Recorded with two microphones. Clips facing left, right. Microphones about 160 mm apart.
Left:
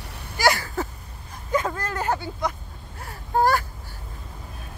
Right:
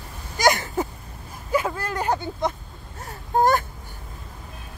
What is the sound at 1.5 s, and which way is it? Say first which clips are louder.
Vehicle: right 1 dB; 10° right (ahead or behind).